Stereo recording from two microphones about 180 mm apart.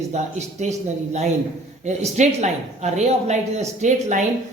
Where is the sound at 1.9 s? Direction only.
40° right (ahead or behind).